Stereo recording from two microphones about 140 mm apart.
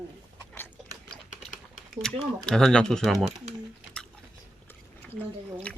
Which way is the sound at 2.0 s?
5° left (ahead or behind).